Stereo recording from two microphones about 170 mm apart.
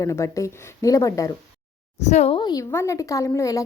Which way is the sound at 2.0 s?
40° left (ahead or behind).